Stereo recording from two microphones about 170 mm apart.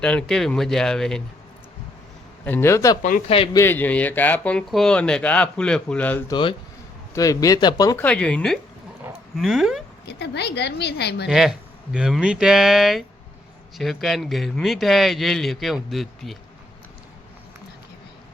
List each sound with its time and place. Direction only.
0.0 s a man's voice: 5° left (ahead or behind)
2.4 s speech: 10° left (ahead or behind)
3.0 s speech: 55° left (ahead or behind)
3.2 s a man's voice: 35° left (ahead or behind)
3.5 s speech: 15° left (ahead or behind)
6.3 s speech: 30° left (ahead or behind)
8.0 s a man's voice: 5° left (ahead or behind)
10.1 s a woman's voice: 85° left
11.3 s a man's voice: 5° right (ahead or behind)